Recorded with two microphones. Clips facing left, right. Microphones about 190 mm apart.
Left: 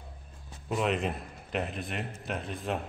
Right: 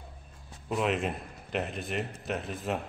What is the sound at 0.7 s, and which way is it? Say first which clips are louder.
A man's voice: even; centre (ahead or behind).